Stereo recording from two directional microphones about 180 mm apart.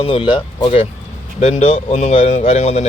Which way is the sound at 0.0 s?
30° left (ahead or behind).